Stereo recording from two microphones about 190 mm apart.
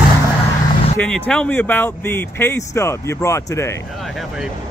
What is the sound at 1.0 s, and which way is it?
Speech, 5° left (ahead or behind).